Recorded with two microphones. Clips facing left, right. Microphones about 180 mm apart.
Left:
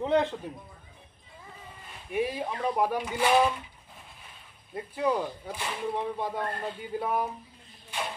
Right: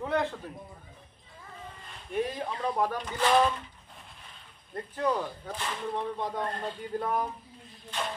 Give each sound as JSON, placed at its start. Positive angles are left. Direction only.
{"t": 0.0, "sound": "a man's voice", "side_deg": 20}
{"t": 1.9, "sound": "speech", "side_deg": 10}
{"t": 4.7, "sound": "speech", "side_deg": 10}